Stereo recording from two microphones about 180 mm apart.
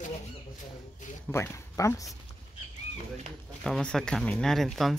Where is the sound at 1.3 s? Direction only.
15° left (ahead or behind).